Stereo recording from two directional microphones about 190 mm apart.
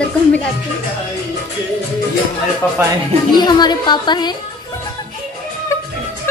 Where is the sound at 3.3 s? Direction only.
20° left (ahead or behind).